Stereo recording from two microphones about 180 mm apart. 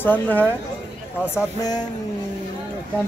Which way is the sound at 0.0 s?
10° left (ahead or behind).